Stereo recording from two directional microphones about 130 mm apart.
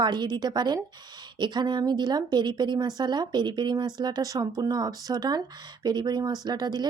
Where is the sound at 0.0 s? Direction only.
35° right (ahead or behind).